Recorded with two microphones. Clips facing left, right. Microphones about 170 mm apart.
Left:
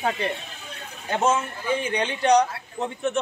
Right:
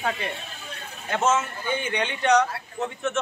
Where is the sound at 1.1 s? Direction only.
35° left (ahead or behind).